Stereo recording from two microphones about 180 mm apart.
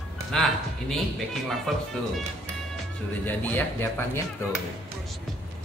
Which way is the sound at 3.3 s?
10° left (ahead or behind).